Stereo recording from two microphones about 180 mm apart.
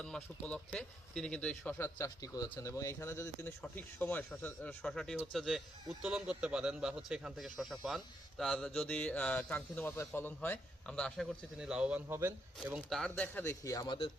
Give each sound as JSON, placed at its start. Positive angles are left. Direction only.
{"t": 0.0, "sound": "speech", "side_deg": 5}
{"t": 2.0, "sound": "speech", "side_deg": 20}
{"t": 12.5, "sound": "speech", "side_deg": -5}